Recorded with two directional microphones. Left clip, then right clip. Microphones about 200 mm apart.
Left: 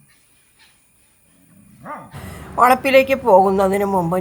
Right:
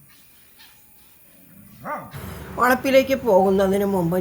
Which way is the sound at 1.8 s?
25° right (ahead or behind).